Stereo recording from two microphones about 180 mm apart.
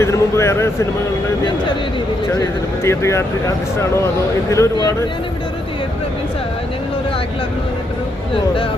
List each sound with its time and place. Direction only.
0.0 s speech: 15° left (ahead or behind)
2.8 s speech: 15° left (ahead or behind)
4.5 s speech: 15° left (ahead or behind)